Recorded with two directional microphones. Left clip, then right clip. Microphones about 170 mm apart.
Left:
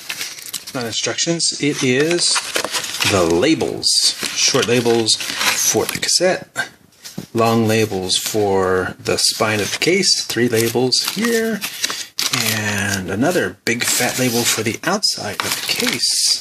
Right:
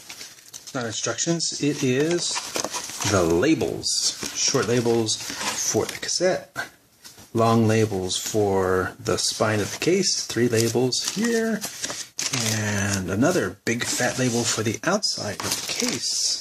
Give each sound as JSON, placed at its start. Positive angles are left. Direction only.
{"t": 0.7, "sound": "speech", "side_deg": 5}
{"t": 12.3, "sound": "speech", "side_deg": 5}